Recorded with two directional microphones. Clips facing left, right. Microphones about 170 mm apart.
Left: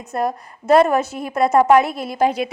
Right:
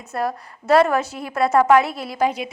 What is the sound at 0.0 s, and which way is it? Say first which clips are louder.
A woman's voice: left 3 dB; 20° left (ahead or behind).